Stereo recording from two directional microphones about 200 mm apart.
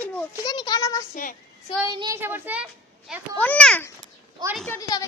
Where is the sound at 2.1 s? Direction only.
10° right (ahead or behind).